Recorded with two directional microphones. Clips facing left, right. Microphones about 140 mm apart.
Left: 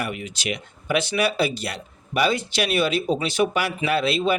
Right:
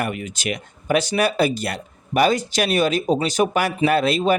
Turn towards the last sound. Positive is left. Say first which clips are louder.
# right 4 dB
turn(degrees=-45)  # may be behind; listen again after turning